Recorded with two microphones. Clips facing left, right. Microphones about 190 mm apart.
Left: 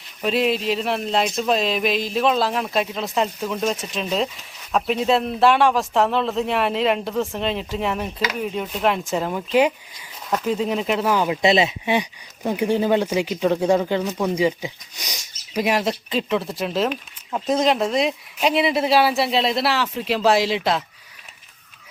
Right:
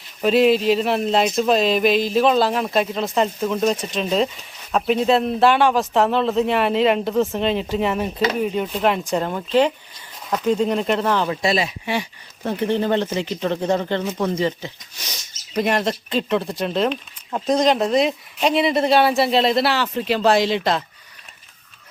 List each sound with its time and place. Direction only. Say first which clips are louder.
0.2 s speech: right 5 dB; centre (ahead or behind)
11.4 s speech: left 3 dB; 20° left (ahead or behind)
12.5 s speech: left 1 dB; 10° left (ahead or behind)
15.5 s speech: right 1 dB; 5° left (ahead or behind)